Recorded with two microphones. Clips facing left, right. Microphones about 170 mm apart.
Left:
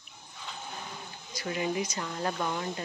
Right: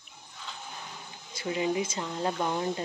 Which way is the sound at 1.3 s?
20° right (ahead or behind).